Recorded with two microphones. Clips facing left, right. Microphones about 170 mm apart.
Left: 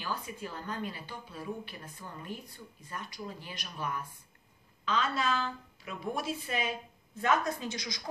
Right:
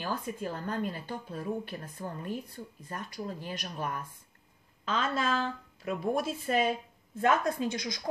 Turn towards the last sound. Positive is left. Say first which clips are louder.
# right 5 dB
turn(degrees=-55)  # may be behind; listen again after turning